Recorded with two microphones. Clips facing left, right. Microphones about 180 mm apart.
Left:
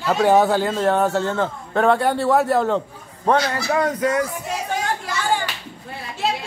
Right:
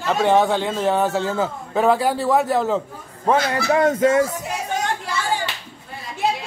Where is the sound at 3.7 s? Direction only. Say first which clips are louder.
Right 4 dB; 25° right (ahead or behind).